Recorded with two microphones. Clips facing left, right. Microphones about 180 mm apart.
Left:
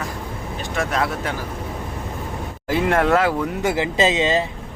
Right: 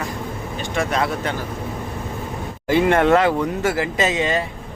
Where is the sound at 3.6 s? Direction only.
20° left (ahead or behind).